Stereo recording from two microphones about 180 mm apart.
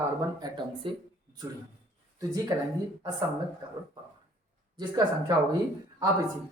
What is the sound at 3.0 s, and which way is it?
Speech, 25° right (ahead or behind).